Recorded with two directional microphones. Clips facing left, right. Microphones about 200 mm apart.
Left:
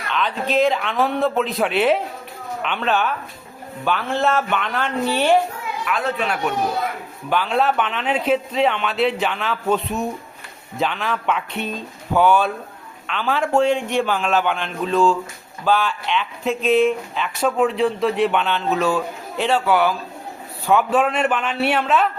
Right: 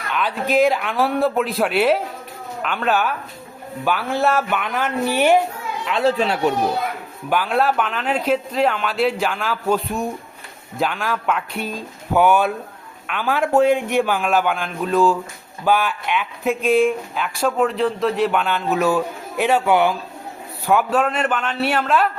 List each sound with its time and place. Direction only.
0.1 s speech: 10° right (ahead or behind)
5.8 s speech: 25° right (ahead or behind)
7.3 s speech: 5° right (ahead or behind)
20.7 s speech: centre (ahead or behind)